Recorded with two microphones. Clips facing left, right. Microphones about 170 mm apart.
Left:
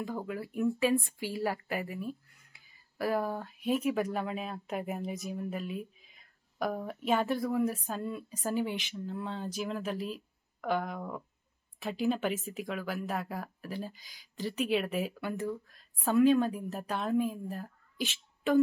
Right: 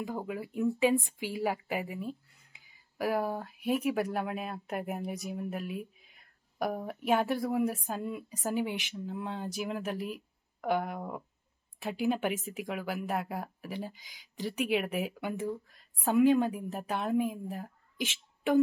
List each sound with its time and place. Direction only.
0.0 s speech: 15° right (ahead or behind)